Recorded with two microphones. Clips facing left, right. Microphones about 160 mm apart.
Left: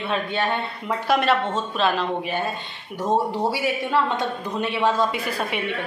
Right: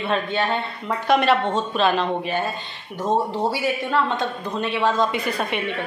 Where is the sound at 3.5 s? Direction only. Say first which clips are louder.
Even; 10° left (ahead or behind).